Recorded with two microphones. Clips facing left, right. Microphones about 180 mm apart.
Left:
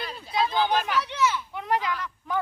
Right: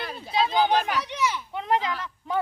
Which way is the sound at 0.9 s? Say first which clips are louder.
Left 1 dB; 15° right (ahead or behind).